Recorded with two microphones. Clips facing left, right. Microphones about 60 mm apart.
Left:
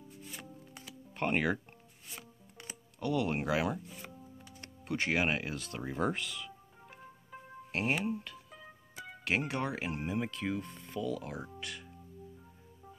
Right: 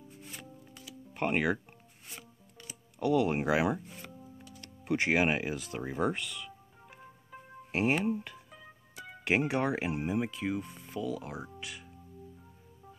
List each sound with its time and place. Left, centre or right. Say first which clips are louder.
1.1 s speech: right 2 dB; centre
3.0 s speech: right 5 dB; centre
7.7 s speech: right 4 dB; centre
9.2 s speech: right 5 dB; centre